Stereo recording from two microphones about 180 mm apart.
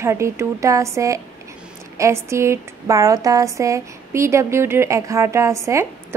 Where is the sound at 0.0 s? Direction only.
15° right (ahead or behind).